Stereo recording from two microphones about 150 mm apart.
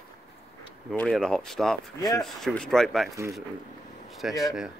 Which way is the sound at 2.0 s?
25° left (ahead or behind).